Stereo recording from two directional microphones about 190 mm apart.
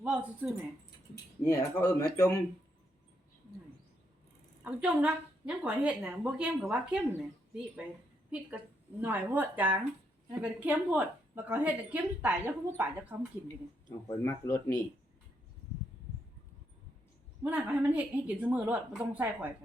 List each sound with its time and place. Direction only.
0.0 s speech: 5° right (ahead or behind)
1.5 s speech: 15° left (ahead or behind)
4.6 s a woman's voice: 5° right (ahead or behind)
9.0 s a woman's voice: 10° right (ahead or behind)
14.1 s speech: 15° left (ahead or behind)
17.4 s a woman's voice: 10° right (ahead or behind)